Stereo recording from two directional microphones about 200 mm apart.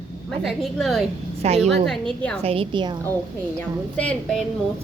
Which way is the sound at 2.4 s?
25° right (ahead or behind).